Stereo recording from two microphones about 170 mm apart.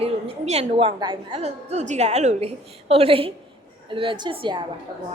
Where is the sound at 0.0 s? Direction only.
35° right (ahead or behind).